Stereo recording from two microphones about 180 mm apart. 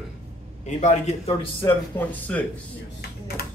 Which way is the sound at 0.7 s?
40° left (ahead or behind).